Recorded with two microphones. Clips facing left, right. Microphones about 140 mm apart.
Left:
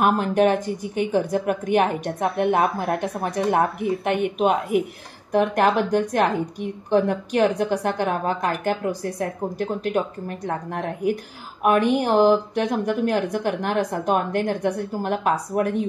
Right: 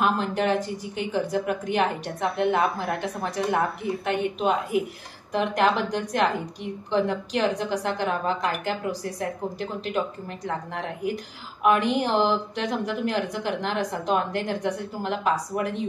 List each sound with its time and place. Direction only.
0.0 s a woman's voice: 50° left (ahead or behind)